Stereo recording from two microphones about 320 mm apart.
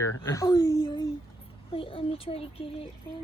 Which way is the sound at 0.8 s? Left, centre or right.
Centre.